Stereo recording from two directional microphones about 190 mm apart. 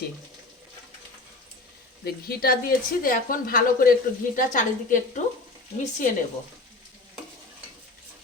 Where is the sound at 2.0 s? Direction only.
55° left (ahead or behind).